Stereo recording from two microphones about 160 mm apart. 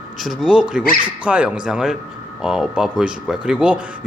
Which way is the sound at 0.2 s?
Centre (ahead or behind).